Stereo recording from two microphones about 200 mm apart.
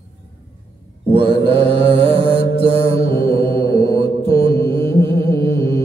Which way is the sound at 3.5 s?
15° left (ahead or behind).